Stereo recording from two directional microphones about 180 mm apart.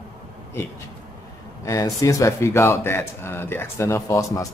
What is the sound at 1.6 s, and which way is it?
Speech, 20° left (ahead or behind).